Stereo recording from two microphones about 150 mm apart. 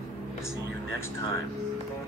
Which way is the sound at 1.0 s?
20° left (ahead or behind).